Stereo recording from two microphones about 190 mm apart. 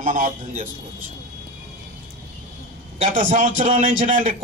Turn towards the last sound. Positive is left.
turn(degrees=-45)  # may be behind; listen again after turning